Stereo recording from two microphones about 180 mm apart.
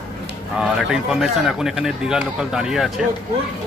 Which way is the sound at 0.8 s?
5° right (ahead or behind).